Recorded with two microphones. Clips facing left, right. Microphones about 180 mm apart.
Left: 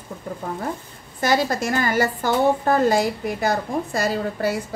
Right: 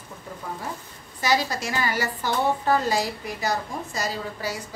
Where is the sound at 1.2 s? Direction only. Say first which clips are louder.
Left 4 dB; 50° left (ahead or behind).